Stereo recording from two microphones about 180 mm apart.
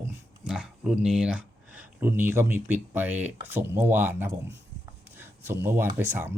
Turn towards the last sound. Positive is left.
turn(degrees=-10)  # may be behind; listen again after turning